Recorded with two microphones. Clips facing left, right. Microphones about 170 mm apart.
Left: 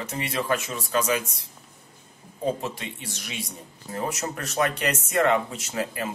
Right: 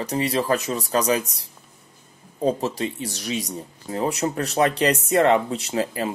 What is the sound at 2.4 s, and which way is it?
Speech, 35° right (ahead or behind).